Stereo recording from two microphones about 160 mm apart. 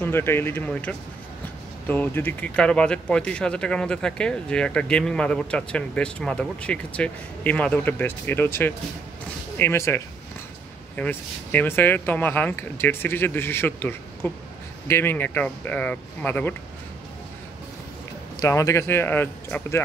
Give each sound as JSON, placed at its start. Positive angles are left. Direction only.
{"t": 0.0, "sound": "speech", "side_deg": 15}
{"t": 18.4, "sound": "speech", "side_deg": 20}